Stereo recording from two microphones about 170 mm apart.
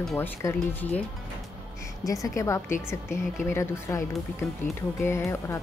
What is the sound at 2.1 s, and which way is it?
A woman's voice, 20° left (ahead or behind).